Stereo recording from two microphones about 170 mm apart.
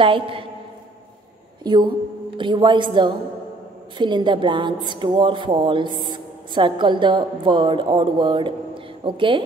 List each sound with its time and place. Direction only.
0.0 s a woman's voice: 30° right (ahead or behind)
1.6 s a woman's voice: 25° right (ahead or behind)